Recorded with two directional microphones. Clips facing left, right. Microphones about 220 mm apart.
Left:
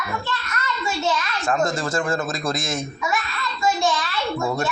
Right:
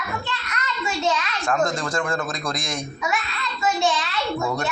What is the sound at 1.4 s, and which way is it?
Speech, centre (ahead or behind).